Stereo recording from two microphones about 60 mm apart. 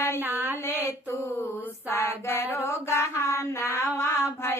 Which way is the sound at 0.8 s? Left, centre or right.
Left.